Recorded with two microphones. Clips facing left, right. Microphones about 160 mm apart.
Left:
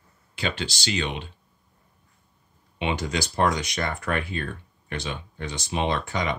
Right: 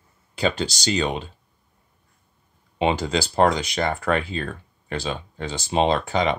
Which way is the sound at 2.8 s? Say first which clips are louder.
Right 5 dB; 35° right (ahead or behind).